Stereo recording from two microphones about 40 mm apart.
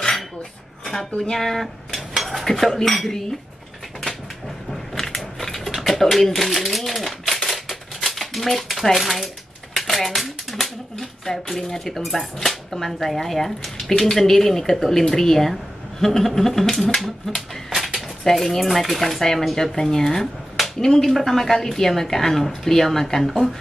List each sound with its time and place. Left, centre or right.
0.8 s speech: centre
2.0 s cutlery: centre
3.1 s speech: centre
4.6 s crushing: centre
5.7 s typewriter: centre
9.8 s speech: centre